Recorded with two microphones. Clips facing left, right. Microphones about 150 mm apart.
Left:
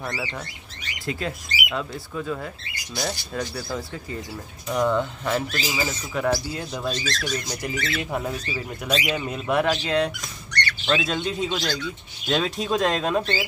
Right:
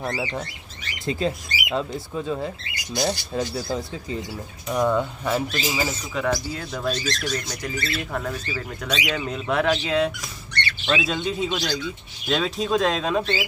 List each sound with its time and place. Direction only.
0.0 s speech: 25° right (ahead or behind)
4.6 s speech: 10° right (ahead or behind)
5.9 s speech: 5° left (ahead or behind); by 8.6 s 20° left (ahead or behind)
8.8 s speech: 5° left (ahead or behind)
10.5 s squawk: 25° right (ahead or behind)
10.9 s speech: centre (ahead or behind)